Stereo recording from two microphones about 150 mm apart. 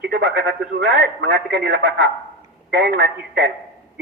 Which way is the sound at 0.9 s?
90° right.